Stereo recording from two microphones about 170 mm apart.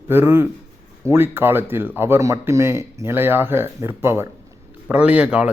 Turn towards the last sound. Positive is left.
turn(degrees=-5)  # may be behind; listen again after turning